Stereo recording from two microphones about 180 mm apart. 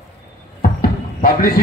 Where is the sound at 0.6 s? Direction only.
55° left (ahead or behind).